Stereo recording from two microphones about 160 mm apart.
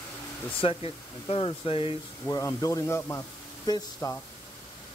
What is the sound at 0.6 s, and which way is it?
Speech, 35° left (ahead or behind).